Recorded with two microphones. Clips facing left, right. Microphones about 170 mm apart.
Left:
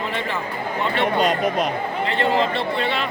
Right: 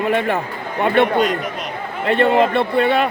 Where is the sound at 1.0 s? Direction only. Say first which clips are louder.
Right 3 dB; 60° right (ahead or behind).